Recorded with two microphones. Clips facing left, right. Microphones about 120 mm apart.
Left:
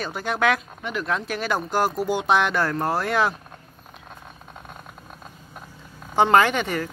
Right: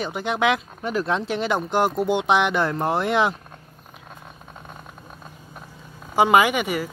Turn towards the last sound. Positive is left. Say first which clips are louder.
# even
turn(degrees=-10)  # may be behind; listen again after turning